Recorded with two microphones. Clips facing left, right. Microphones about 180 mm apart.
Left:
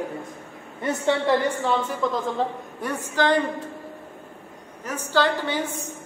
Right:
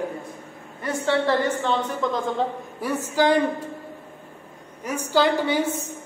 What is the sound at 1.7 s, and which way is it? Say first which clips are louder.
A woman's voice: even; 5° left (ahead or behind).